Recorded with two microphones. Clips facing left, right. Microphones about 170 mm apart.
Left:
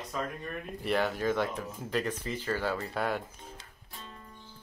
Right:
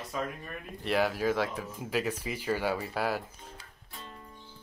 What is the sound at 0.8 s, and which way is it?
Speech, 5° right (ahead or behind).